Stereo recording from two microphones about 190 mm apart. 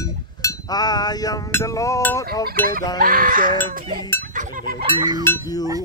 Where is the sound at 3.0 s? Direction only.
45° right (ahead or behind).